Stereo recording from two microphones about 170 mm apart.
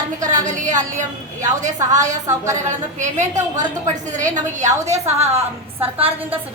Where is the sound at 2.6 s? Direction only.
45° right (ahead or behind).